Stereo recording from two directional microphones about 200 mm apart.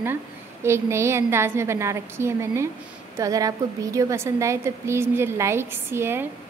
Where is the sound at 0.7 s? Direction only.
15° right (ahead or behind).